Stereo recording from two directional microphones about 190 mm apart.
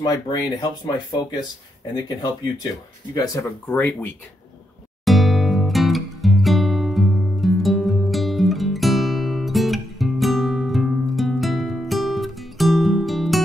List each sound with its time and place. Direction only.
0.0 s speech: 20° left (ahead or behind)
2.0 s speech: 20° left (ahead or behind)
5.0 s music: centre (ahead or behind)